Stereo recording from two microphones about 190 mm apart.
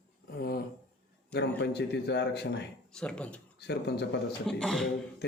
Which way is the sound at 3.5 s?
60° left (ahead or behind).